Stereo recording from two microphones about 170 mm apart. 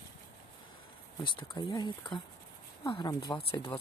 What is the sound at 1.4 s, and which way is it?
Speech, 25° left (ahead or behind).